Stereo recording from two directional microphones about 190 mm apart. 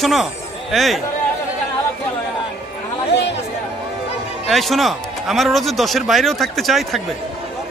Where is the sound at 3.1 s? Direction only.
65° left (ahead or behind).